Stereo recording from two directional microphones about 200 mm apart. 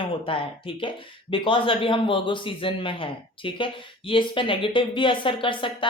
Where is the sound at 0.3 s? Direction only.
25° left (ahead or behind).